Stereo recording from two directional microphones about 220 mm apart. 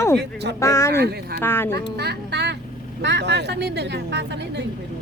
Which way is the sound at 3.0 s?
50° right (ahead or behind).